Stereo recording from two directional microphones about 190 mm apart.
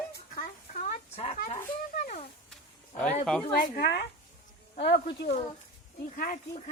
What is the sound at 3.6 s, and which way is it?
Speech, 60° left (ahead or behind).